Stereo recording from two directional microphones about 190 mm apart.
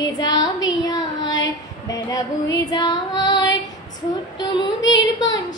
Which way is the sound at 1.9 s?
20° left (ahead or behind).